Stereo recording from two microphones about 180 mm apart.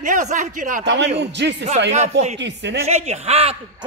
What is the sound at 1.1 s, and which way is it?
Speech, 75° right (ahead or behind).